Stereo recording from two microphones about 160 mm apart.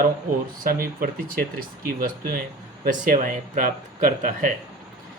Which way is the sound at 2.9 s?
60° right (ahead or behind).